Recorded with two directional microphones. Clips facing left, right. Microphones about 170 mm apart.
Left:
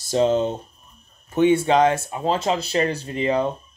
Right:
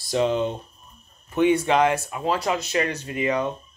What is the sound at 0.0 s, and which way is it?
Speech, 30° left (ahead or behind).